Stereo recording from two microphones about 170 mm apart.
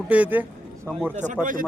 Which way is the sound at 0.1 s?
10° right (ahead or behind).